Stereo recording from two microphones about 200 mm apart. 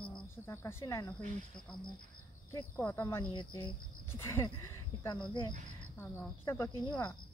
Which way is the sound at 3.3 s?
25° left (ahead or behind).